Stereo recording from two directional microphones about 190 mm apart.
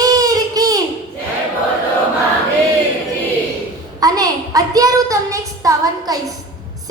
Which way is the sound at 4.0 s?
20° right (ahead or behind).